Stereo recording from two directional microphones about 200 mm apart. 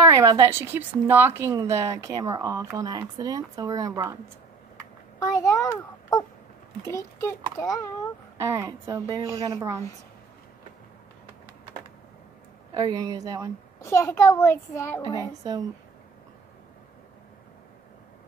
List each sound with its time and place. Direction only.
0.1 s speech: 15° right (ahead or behind)
5.4 s a child's voice: 15° left (ahead or behind)
8.4 s speech: 15° right (ahead or behind)
12.7 s speech: 20° right (ahead or behind)
13.7 s a child's voice: 15° left (ahead or behind)
15.1 s speech: 20° right (ahead or behind)